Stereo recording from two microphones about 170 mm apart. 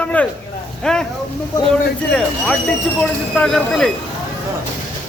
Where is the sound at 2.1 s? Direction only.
5° left (ahead or behind).